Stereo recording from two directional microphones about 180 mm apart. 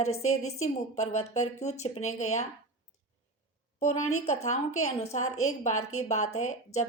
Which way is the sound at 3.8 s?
40° left (ahead or behind).